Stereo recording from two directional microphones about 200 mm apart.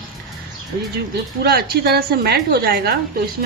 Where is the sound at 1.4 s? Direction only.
55° right (ahead or behind).